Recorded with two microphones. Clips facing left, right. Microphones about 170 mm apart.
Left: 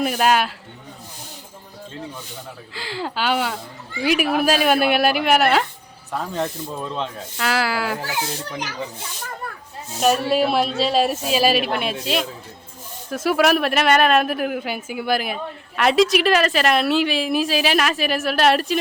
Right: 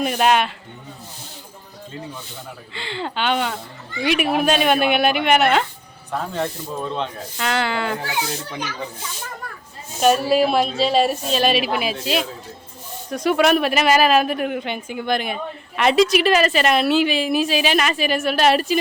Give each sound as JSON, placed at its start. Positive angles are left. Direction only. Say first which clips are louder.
{"t": 0.0, "sound": "speech", "louder": "right 1 dB", "side_deg": 0}
{"t": 2.7, "sound": "speech", "louder": "even", "side_deg": 5}
{"t": 10.0, "sound": "speech", "louder": "right 2 dB", "side_deg": 0}